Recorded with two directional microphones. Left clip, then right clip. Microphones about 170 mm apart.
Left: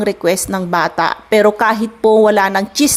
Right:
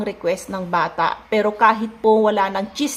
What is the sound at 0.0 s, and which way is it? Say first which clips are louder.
A woman's voice: left 7 dB; 40° left (ahead or behind).